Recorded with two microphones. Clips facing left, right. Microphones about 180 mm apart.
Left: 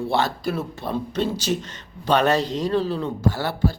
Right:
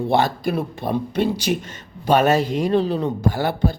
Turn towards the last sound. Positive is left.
turn(degrees=-15)  # may be behind; listen again after turning